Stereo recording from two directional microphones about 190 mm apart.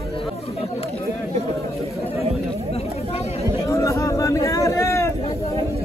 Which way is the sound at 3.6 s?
15° left (ahead or behind).